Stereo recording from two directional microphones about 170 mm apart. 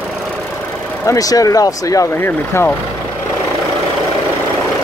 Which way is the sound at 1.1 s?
20° left (ahead or behind).